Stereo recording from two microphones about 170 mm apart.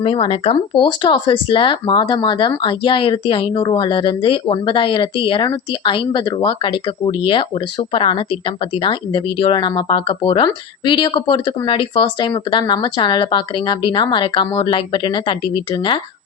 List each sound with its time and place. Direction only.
0.0 s speech: 35° left (ahead or behind)